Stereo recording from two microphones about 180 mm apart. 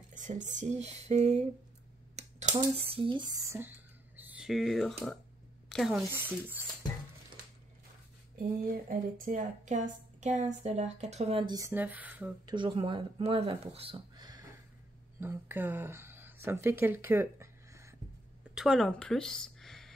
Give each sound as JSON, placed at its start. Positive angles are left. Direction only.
{"t": 0.1, "sound": "a woman's voice", "side_deg": -45}
{"t": 8.4, "sound": "speech", "side_deg": -50}
{"t": 12.4, "sound": "speech", "side_deg": -25}
{"t": 15.1, "sound": "speech", "side_deg": -10}
{"t": 18.5, "sound": "speech", "side_deg": -5}